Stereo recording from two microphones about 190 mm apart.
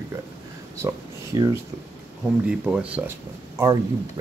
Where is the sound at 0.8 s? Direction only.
20° right (ahead or behind).